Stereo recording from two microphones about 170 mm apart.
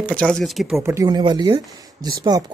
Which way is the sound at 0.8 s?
20° right (ahead or behind).